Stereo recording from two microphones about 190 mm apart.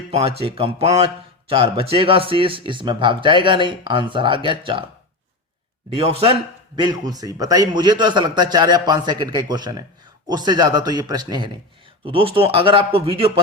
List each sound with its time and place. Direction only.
0.1 s speech: 30° right (ahead or behind)
5.9 s a man's voice: 30° right (ahead or behind)